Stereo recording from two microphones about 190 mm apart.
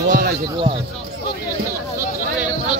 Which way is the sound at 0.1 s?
55° right (ahead or behind).